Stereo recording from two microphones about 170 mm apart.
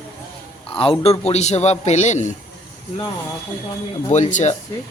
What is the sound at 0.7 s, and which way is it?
A man's voice, 35° left (ahead or behind).